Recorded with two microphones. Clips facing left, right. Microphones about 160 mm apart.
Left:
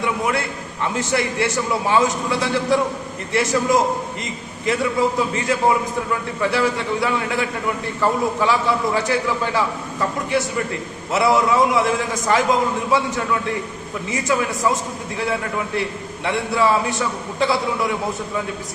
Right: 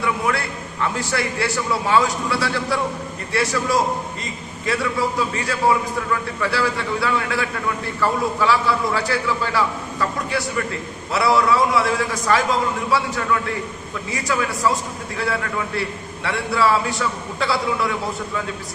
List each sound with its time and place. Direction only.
0.0 s a man's voice: 20° left (ahead or behind)